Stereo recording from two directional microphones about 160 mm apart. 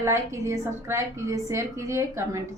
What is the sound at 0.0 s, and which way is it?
A woman's voice, 15° right (ahead or behind).